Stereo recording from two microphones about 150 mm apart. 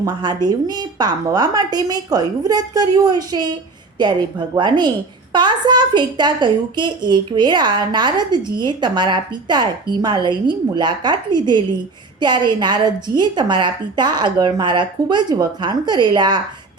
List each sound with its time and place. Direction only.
0.0 s a woman's voice: 30° right (ahead or behind)